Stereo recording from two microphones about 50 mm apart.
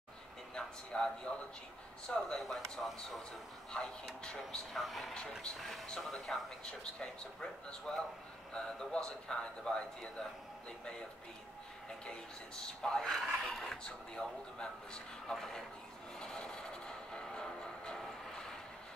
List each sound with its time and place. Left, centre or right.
0.6 s a man's voice: centre
3.7 s speech: centre
4.7 s speech: centre
12.1 s speech: centre
16.2 s music: centre